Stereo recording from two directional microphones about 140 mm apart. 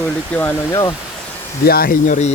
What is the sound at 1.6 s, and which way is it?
Speech, 90° left.